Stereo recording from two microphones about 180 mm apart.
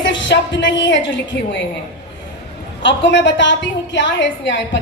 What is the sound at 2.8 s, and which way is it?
A woman's voice, 80° left.